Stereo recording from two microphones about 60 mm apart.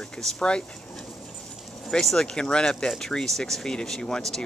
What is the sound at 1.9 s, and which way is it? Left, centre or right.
Speech, centre.